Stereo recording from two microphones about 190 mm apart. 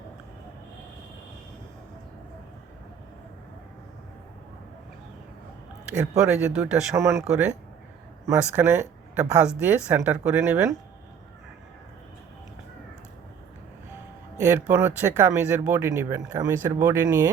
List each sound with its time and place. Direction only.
5.9 s speech: 5° right (ahead or behind)
6.9 s speech: 15° right (ahead or behind)
14.4 s speech: 10° right (ahead or behind)